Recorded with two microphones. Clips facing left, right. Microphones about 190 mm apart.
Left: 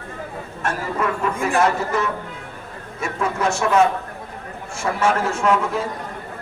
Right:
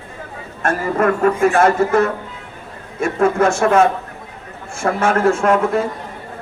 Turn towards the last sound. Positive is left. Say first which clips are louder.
# right 4 dB
turn(degrees=-50)  # may be behind; listen again after turning